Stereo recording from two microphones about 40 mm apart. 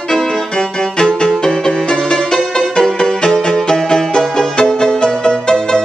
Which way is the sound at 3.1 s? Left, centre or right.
Centre.